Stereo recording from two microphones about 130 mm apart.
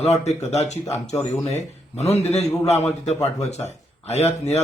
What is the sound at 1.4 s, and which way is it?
A man's voice, 55° left (ahead or behind).